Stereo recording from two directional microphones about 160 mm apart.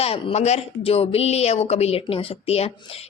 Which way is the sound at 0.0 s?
40° left (ahead or behind).